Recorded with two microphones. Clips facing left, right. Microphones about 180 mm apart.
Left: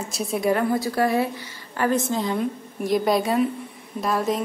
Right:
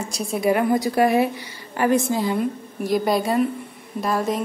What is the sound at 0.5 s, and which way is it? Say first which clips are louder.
A woman's voice: right 3 dB; 15° right (ahead or behind).